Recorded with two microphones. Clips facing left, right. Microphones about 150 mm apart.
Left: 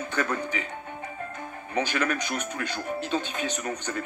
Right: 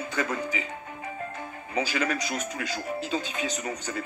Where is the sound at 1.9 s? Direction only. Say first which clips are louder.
Even; 60° left (ahead or behind).